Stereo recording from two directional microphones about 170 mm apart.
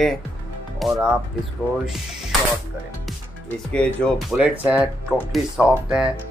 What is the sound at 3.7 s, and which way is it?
Speech, 5° left (ahead or behind).